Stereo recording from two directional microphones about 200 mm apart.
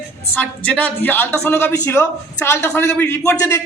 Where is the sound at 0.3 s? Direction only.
5° left (ahead or behind).